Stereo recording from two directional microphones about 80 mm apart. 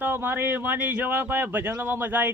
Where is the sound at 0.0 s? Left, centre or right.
Right.